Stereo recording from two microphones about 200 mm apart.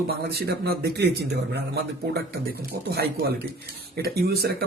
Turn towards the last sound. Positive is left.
turn(degrees=-50)  # may be behind; listen again after turning